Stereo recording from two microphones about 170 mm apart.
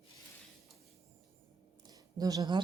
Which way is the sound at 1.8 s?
20° right (ahead or behind).